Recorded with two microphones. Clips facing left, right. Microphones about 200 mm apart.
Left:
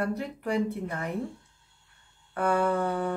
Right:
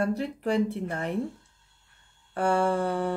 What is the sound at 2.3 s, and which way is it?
Mantra, 30° right (ahead or behind).